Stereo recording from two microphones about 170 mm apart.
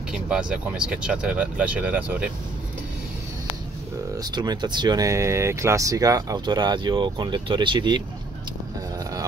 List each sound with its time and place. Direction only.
0.1 s speech: 5° right (ahead or behind)
4.2 s speech: 25° right (ahead or behind)